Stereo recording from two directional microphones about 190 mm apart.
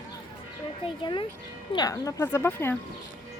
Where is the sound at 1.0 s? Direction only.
25° left (ahead or behind).